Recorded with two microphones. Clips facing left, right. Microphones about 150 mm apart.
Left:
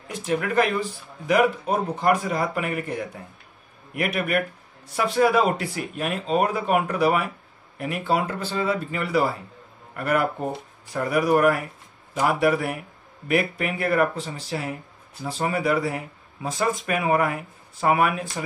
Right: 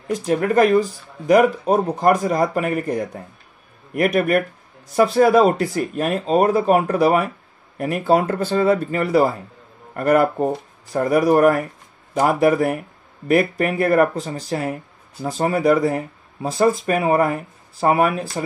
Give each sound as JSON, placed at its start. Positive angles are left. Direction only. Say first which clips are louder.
{"t": 0.1, "sound": "speech", "louder": "right 6 dB", "side_deg": -40}